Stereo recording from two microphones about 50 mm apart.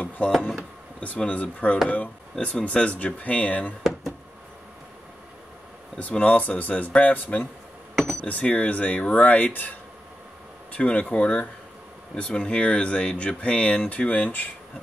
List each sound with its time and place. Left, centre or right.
1.0 s speech: left
5.9 s speech: left
7.9 s a sound: centre
8.3 s speech: left